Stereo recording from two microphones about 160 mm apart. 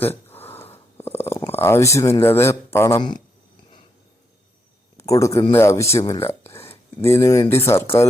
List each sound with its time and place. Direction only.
0.0 s a sound: 15° left (ahead or behind)
1.5 s speech: 15° left (ahead or behind)
4.9 s speech: 20° left (ahead or behind)